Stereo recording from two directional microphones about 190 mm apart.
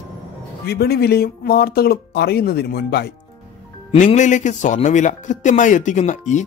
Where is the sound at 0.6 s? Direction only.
55° left (ahead or behind).